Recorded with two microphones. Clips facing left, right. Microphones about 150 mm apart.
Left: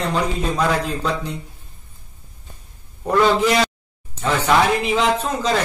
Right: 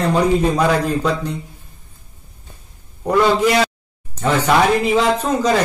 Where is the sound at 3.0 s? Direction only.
10° right (ahead or behind).